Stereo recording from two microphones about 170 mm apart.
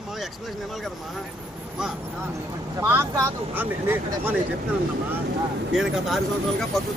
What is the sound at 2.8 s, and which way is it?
Speech, 15° right (ahead or behind).